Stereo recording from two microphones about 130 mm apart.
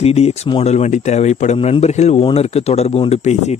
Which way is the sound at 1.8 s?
60° left (ahead or behind).